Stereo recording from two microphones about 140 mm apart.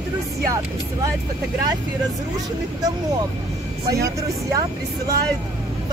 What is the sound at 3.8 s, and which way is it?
Speech, 25° right (ahead or behind).